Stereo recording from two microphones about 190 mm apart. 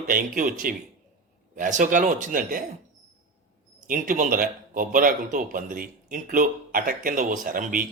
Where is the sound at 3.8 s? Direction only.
45° right (ahead or behind).